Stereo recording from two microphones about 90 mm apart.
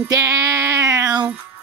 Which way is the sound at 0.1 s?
35° right (ahead or behind).